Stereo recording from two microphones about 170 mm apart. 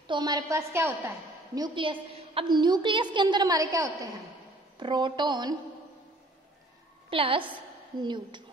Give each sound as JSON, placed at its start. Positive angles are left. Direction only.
{"t": 0.0, "sound": "a woman's voice", "side_deg": -25}
{"t": 7.1, "sound": "a woman's voice", "side_deg": -30}